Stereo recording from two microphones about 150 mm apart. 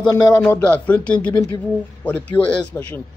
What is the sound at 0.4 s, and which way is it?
A man's voice, 15° left (ahead or behind).